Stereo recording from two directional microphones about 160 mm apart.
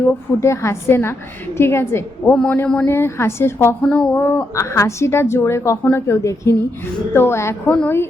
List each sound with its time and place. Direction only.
0.3 s a woman's voice: 15° left (ahead or behind)